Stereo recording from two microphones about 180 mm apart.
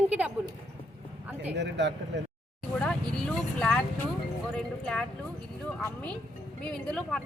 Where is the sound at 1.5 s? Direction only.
75° right (ahead or behind).